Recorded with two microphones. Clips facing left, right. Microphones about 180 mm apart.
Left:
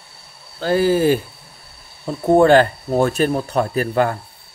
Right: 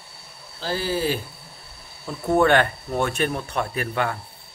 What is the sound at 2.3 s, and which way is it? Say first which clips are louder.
Speech: left 6 dB; 35° left (ahead or behind).